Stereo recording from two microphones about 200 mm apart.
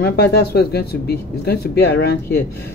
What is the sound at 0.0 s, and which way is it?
Speech, 55° left (ahead or behind).